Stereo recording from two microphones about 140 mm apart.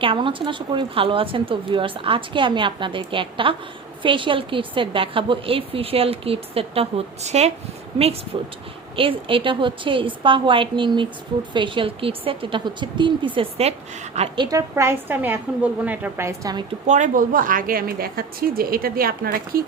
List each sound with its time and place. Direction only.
0.0 s a woman's voice: 40° right (ahead or behind)
9.0 s a woman's voice: 40° right (ahead or behind)
14.3 s a woman's voice: 25° right (ahead or behind)
16.8 s a woman's voice: 60° right (ahead or behind); by 19.6 s 90° right